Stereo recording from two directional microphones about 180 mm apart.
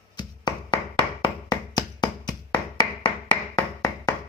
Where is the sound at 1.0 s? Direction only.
20° left (ahead or behind).